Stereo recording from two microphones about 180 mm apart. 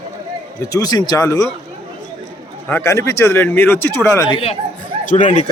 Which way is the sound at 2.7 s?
15° left (ahead or behind).